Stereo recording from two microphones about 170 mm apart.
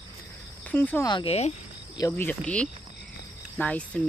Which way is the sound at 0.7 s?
10° left (ahead or behind).